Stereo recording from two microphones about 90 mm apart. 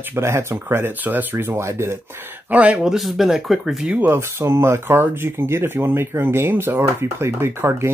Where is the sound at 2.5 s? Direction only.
15° right (ahead or behind).